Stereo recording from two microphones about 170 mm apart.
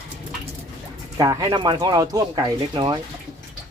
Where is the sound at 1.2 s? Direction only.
20° right (ahead or behind).